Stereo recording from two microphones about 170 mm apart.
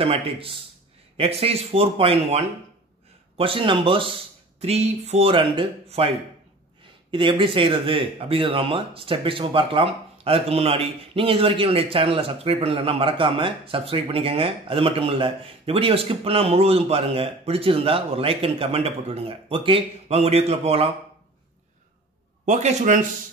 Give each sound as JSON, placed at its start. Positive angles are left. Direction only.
{"t": 0.0, "sound": "speech", "side_deg": -35}
{"t": 22.4, "sound": "a man's voice", "side_deg": -45}